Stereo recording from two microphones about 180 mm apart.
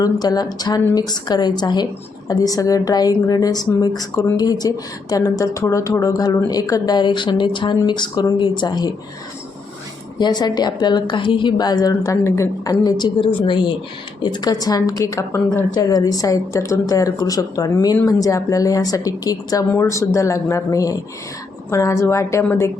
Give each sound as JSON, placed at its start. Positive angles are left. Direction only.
{"t": 0.0, "sound": "a woman's voice", "side_deg": 20}
{"t": 10.2, "sound": "a woman's voice", "side_deg": 25}